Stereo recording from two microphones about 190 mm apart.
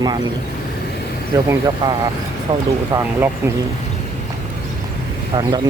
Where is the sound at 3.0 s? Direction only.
10° right (ahead or behind).